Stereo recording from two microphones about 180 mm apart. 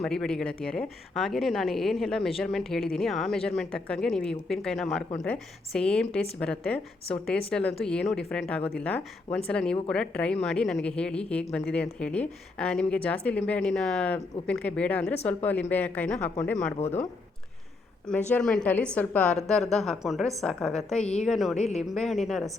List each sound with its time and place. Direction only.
0.0 s speech: 5° left (ahead or behind)
16.8 s speech: 40° left (ahead or behind)
18.3 s speech: 5° left (ahead or behind)